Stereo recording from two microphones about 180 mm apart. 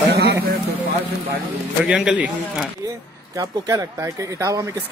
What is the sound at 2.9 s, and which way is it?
Speech, 20° right (ahead or behind).